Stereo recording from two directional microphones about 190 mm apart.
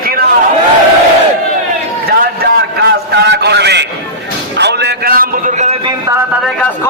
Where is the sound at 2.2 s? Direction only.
55° right (ahead or behind); by 5.8 s 35° right (ahead or behind).